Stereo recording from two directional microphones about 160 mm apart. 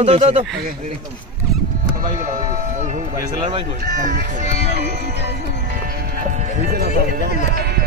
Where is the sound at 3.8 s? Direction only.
60° right (ahead or behind).